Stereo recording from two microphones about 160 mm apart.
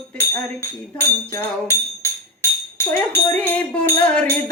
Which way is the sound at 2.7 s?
15° left (ahead or behind).